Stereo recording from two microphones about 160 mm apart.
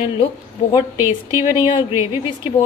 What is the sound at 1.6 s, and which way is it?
Speech, 30° left (ahead or behind).